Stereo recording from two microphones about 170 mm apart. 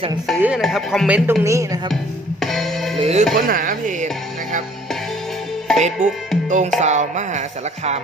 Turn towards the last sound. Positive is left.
turn(degrees=-45)  # may be behind; listen again after turning